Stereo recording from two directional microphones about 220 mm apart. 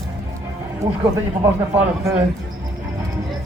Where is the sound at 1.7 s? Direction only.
10° right (ahead or behind).